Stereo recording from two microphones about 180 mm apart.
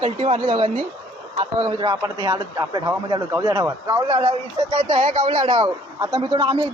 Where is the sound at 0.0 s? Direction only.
35° right (ahead or behind).